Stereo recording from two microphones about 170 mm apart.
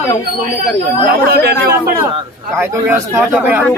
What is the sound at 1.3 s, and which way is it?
Speech, 65° right (ahead or behind).